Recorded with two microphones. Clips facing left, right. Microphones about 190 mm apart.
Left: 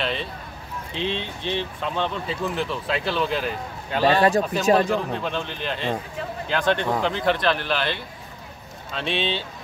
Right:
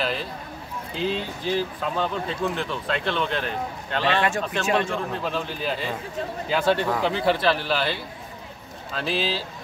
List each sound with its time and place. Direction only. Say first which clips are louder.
0.0 s a sound: even; centre (ahead or behind)
0.9 s speech: right 1 dB; 5° right (ahead or behind)
4.0 s a man's voice: left 5 dB; 40° left (ahead or behind)
4.8 s speech: left 3 dB; centre (ahead or behind)